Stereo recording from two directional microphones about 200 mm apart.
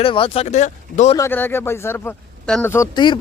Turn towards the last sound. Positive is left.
turn(degrees=20)  # may be behind; listen again after turning